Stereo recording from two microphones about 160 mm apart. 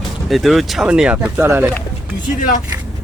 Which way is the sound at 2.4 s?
55° left (ahead or behind).